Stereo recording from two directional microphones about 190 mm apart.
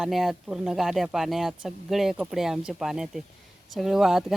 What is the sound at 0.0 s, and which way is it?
Speech, centre (ahead or behind).